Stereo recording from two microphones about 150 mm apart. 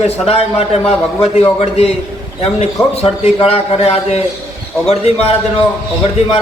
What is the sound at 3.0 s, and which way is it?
A man's voice, 40° left (ahead or behind).